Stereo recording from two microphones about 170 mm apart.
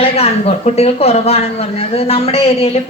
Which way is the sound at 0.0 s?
35° left (ahead or behind).